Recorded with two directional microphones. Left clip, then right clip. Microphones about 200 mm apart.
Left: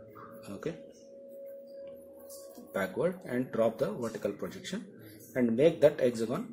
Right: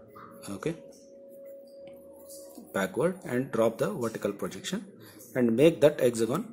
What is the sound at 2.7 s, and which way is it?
Speech, 20° right (ahead or behind).